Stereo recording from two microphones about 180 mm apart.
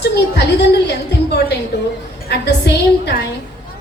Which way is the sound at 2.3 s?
70° left (ahead or behind).